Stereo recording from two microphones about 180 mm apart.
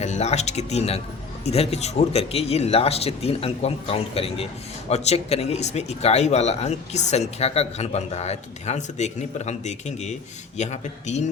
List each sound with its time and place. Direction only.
0.0 s speech: 40° left (ahead or behind)